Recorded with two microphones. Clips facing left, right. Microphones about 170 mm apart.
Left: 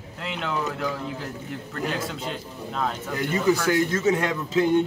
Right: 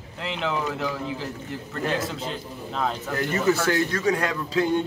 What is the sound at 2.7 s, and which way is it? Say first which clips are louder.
Speech: right 1 dB; centre (ahead or behind).